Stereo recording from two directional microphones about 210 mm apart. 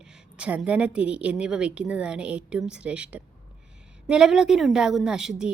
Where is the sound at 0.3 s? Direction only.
5° right (ahead or behind).